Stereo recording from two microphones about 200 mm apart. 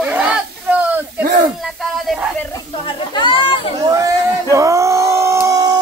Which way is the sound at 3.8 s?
15° right (ahead or behind).